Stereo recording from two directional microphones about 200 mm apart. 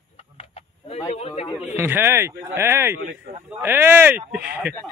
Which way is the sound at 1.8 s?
10° right (ahead or behind).